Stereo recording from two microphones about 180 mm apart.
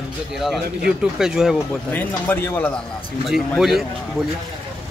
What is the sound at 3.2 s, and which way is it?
Speech, centre (ahead or behind).